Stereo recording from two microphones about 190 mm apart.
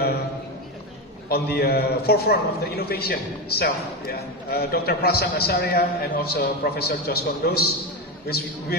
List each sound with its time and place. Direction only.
1.3 s a man's voice: 55° left (ahead or behind)